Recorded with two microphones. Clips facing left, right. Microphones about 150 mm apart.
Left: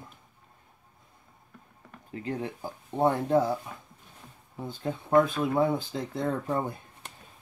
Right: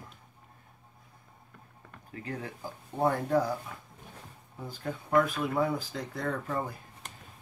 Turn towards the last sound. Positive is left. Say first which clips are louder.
# left 4 dB
turn(degrees=25)  # may be behind; listen again after turning